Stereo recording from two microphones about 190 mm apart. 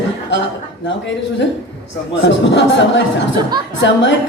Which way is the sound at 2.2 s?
70° left (ahead or behind).